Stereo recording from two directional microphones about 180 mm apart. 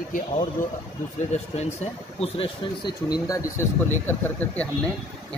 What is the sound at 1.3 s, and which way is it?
Speech, 35° left (ahead or behind).